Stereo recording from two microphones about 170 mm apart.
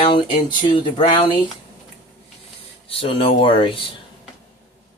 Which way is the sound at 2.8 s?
35° left (ahead or behind).